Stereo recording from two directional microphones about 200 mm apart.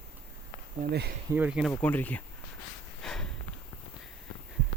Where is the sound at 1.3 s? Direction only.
5° right (ahead or behind).